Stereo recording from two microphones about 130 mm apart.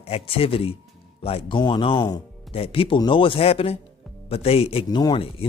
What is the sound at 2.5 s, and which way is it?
A man's voice, 45° left (ahead or behind).